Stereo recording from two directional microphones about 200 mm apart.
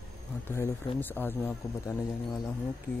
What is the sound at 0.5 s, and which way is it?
Speech, 10° left (ahead or behind).